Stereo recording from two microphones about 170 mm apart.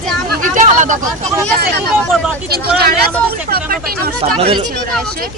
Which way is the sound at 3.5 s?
65° right (ahead or behind).